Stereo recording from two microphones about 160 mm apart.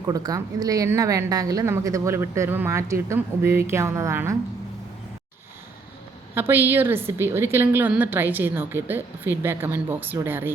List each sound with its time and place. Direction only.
0.0 s a woman's voice: 25° right (ahead or behind)
6.3 s a woman's voice: 15° right (ahead or behind)